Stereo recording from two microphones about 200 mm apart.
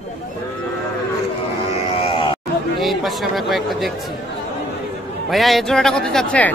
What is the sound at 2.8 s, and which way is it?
Speech, centre (ahead or behind).